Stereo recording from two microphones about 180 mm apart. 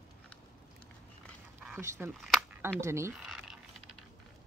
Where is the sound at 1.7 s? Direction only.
15° right (ahead or behind).